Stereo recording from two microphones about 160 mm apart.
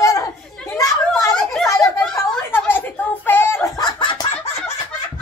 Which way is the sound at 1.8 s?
5° left (ahead or behind).